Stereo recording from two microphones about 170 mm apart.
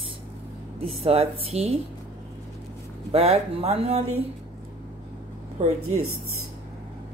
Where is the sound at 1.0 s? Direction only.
35° right (ahead or behind).